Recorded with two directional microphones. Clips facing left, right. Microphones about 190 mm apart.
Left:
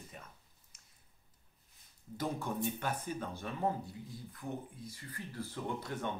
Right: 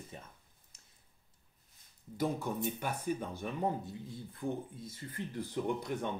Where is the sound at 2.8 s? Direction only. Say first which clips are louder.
Right 2 dB; 10° right (ahead or behind).